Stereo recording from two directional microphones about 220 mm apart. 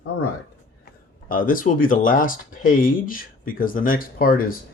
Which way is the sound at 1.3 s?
40° left (ahead or behind).